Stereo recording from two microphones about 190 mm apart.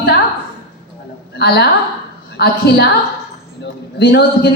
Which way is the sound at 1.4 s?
60° left (ahead or behind).